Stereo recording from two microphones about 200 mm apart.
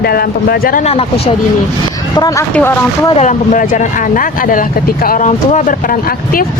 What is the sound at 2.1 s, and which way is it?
Speech, 15° left (ahead or behind).